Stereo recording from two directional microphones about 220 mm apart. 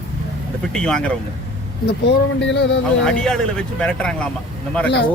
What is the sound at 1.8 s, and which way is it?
Speech, 50° left (ahead or behind).